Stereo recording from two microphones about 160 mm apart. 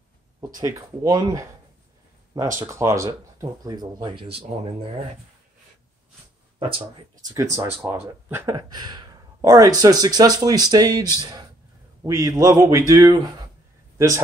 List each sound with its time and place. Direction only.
0.4 s speech: 20° right (ahead or behind)
2.6 s speech: 20° right (ahead or behind); by 4.7 s 35° right (ahead or behind)
7.5 s a man's voice: 15° right (ahead or behind)